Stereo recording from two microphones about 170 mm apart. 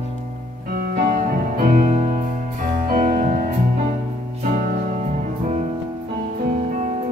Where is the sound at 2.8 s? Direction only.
55° right (ahead or behind).